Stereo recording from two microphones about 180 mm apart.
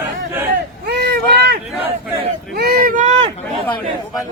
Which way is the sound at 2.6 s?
55° right (ahead or behind).